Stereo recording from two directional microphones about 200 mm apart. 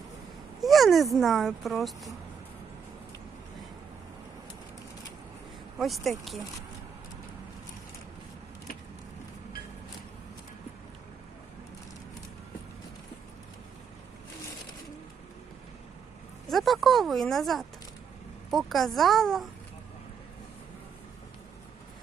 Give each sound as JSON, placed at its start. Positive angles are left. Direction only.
{"t": 0.6, "sound": "speech", "side_deg": 0}
{"t": 5.7, "sound": "speech", "side_deg": 0}
{"t": 16.5, "sound": "speech", "side_deg": 0}